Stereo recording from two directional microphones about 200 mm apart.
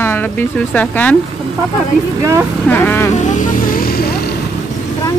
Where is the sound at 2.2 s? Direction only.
15° right (ahead or behind).